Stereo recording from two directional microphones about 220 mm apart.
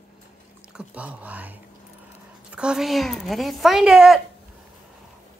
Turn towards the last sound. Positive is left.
turn(degrees=-5)  # may be behind; listen again after turning